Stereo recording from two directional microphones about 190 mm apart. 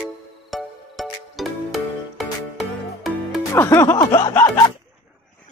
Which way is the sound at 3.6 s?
15° left (ahead or behind).